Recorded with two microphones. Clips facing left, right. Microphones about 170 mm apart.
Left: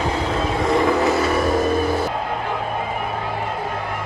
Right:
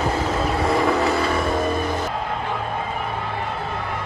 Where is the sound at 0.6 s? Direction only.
Centre (ahead or behind).